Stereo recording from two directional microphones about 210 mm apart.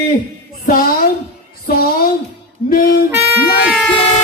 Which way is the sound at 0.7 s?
45° left (ahead or behind).